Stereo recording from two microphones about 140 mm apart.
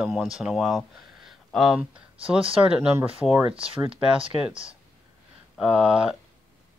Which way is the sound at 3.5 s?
40° right (ahead or behind).